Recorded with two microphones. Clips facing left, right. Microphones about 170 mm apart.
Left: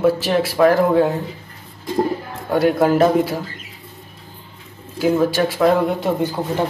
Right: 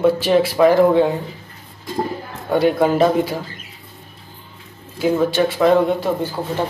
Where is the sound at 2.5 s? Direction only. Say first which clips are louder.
Even; 5° left (ahead or behind).